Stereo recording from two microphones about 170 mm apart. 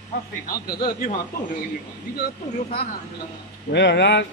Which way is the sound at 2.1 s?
65° left (ahead or behind).